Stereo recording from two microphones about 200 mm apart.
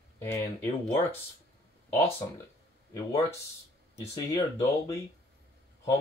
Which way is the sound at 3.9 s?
15° left (ahead or behind).